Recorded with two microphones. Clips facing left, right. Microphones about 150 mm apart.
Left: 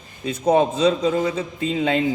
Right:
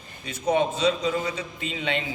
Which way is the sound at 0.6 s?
45° left (ahead or behind).